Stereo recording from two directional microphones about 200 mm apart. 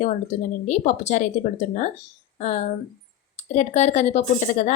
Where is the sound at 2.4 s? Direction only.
35° left (ahead or behind).